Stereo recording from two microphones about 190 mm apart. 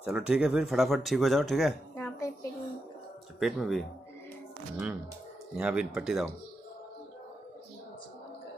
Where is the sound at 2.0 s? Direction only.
15° left (ahead or behind).